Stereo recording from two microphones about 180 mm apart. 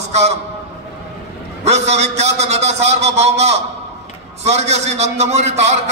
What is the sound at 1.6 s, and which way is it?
A man's voice, 40° right (ahead or behind).